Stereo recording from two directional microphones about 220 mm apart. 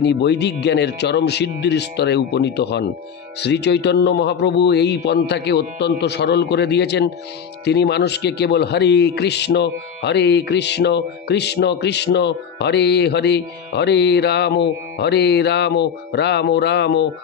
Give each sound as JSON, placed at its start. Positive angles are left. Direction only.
{"t": 0.0, "sound": "a man's voice", "side_deg": 50}